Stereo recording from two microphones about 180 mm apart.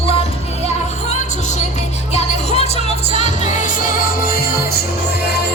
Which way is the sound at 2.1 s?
35° left (ahead or behind).